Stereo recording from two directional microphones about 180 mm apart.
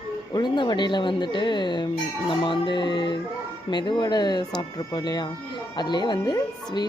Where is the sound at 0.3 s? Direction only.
25° left (ahead or behind).